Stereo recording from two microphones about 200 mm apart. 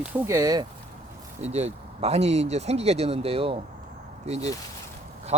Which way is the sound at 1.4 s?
35° right (ahead or behind).